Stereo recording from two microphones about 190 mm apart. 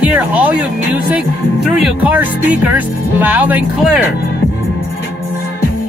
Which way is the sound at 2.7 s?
10° right (ahead or behind).